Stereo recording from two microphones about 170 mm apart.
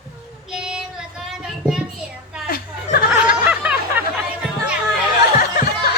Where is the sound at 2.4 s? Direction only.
60° left (ahead or behind).